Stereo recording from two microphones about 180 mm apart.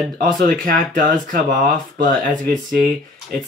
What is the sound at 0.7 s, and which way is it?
Speech, 50° right (ahead or behind).